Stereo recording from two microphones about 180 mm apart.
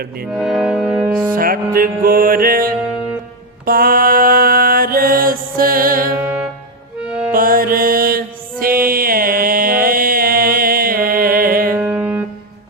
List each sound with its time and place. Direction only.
0.3 s music: centre (ahead or behind)
1.3 s music: 50° right (ahead or behind)
3.7 s mantra: 55° right (ahead or behind)
6.1 s music: 10° right (ahead or behind)
7.3 s music: 50° right (ahead or behind)
11.8 s music: 10° right (ahead or behind)